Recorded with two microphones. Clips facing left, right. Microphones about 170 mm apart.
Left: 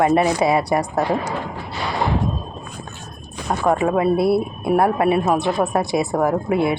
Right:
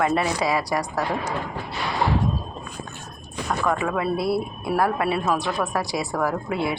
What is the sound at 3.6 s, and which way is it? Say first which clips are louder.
A woman's voice: left 7 dB; 30° left (ahead or behind).